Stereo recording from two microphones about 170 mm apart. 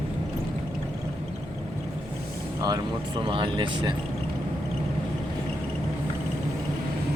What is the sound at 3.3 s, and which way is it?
Speech, 30° right (ahead or behind).